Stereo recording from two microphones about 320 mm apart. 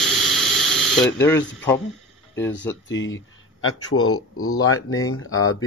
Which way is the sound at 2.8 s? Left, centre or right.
Left.